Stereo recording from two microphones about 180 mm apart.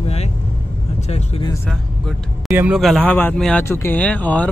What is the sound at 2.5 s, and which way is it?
Speech, 10° right (ahead or behind).